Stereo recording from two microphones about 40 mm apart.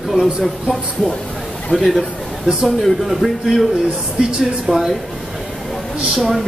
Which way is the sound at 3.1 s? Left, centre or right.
Centre.